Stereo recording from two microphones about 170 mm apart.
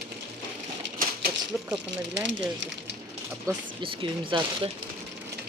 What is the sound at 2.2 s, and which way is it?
Speech, 90° right.